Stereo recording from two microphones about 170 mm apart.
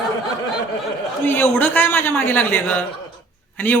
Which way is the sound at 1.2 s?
10° left (ahead or behind).